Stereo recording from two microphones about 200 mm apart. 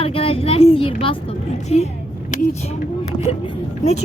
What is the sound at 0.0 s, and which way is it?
Speech, 30° left (ahead or behind).